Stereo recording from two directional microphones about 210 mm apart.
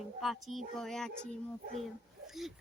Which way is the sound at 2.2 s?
Centre (ahead or behind).